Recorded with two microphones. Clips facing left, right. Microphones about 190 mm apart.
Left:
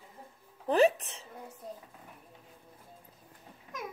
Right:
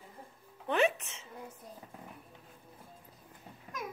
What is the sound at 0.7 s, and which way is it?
Speech, 35° left (ahead or behind).